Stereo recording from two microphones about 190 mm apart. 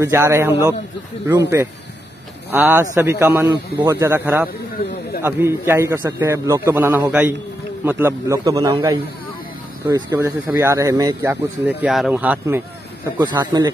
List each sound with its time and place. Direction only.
0.0 s speech: 15° right (ahead or behind)
2.5 s speech: 10° right (ahead or behind)
13.2 s speech: 20° right (ahead or behind)